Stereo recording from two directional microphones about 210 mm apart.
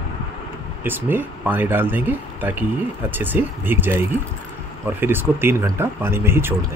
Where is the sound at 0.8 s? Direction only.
10° right (ahead or behind).